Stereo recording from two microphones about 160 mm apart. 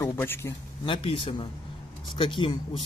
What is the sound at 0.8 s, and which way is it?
Speech, 35° left (ahead or behind).